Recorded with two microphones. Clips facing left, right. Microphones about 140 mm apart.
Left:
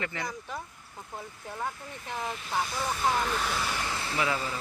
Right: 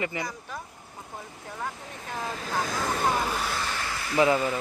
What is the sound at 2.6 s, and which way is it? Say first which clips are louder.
Speech: right 3 dB; 90° right.